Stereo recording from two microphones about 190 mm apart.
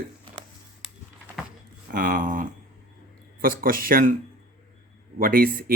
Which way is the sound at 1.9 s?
50° right (ahead or behind).